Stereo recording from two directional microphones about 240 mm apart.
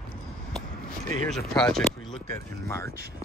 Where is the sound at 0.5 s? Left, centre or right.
Centre.